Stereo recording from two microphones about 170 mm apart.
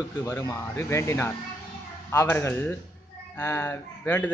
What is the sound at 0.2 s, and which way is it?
Speech, 20° left (ahead or behind).